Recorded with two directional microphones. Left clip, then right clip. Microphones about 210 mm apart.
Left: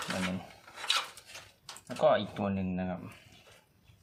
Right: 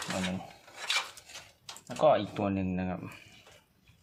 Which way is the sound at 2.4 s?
30° right (ahead or behind).